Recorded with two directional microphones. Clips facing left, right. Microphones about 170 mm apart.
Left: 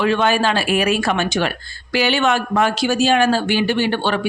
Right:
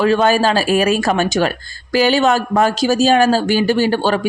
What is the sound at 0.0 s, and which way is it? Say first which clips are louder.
A man's voice: right 3 dB; 40° right (ahead or behind).